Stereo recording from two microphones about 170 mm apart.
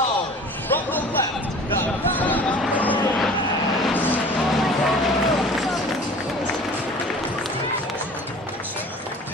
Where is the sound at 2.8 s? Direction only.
10° left (ahead or behind).